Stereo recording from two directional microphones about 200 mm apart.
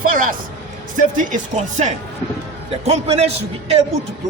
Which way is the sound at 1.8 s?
35° right (ahead or behind).